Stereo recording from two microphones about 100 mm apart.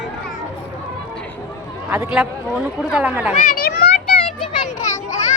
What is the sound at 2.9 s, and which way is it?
Speech, 15° right (ahead or behind).